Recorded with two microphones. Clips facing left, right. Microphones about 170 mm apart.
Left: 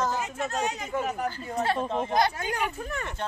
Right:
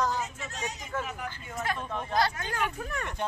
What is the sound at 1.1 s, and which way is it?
Speech, 40° left (ahead or behind).